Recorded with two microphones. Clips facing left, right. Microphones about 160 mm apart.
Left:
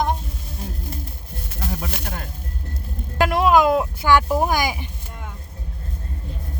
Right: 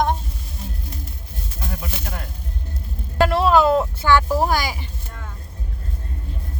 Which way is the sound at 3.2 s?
10° left (ahead or behind).